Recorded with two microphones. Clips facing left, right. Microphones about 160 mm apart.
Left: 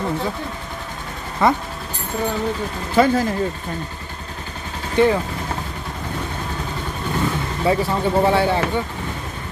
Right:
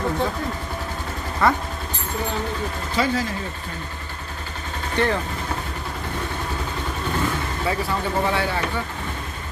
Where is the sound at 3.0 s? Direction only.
50° left (ahead or behind).